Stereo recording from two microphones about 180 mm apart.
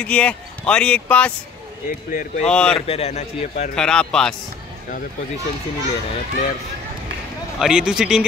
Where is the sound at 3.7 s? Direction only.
5° left (ahead or behind).